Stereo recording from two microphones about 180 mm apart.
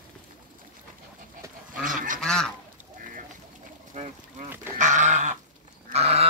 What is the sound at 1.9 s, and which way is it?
Goose, 45° right (ahead or behind).